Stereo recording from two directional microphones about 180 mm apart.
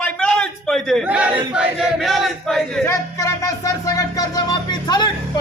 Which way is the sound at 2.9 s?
20° left (ahead or behind).